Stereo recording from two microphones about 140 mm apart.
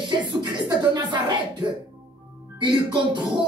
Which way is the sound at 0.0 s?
35° right (ahead or behind).